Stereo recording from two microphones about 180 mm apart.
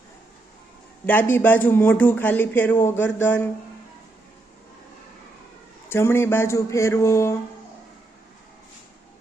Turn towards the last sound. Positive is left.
turn(degrees=15)  # may be behind; listen again after turning